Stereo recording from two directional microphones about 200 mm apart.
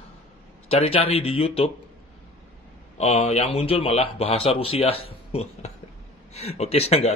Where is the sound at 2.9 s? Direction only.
35° left (ahead or behind).